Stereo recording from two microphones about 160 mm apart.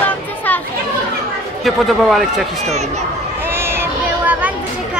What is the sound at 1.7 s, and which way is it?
Speech, centre (ahead or behind).